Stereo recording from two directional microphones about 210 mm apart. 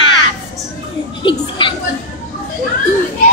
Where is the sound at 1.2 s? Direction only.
25° left (ahead or behind).